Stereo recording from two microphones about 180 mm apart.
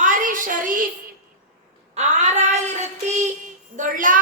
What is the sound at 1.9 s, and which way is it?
Child singing, 40° right (ahead or behind).